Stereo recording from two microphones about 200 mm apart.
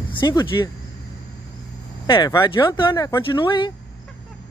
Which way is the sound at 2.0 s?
20° left (ahead or behind).